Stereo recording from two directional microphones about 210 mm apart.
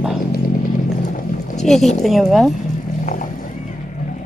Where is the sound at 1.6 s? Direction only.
Centre (ahead or behind).